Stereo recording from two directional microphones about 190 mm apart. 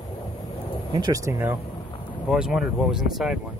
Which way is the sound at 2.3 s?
5° right (ahead or behind).